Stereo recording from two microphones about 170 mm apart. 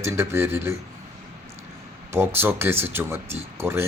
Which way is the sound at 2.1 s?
15° right (ahead or behind).